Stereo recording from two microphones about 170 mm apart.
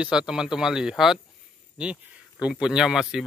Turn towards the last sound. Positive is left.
turn(degrees=-5)  # may be behind; listen again after turning